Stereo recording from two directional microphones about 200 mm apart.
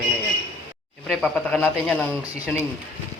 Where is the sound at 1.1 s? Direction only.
5° left (ahead or behind).